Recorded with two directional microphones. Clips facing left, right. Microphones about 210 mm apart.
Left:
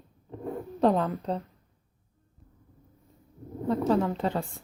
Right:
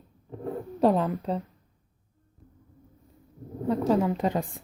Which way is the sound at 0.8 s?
5° right (ahead or behind).